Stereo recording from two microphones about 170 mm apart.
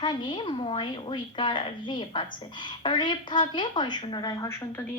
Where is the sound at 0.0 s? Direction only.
25° left (ahead or behind).